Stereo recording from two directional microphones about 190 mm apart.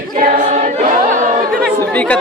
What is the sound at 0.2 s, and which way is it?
Choir, 45° right (ahead or behind).